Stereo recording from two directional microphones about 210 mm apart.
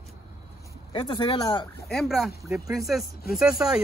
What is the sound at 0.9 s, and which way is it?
Speech, 20° left (ahead or behind).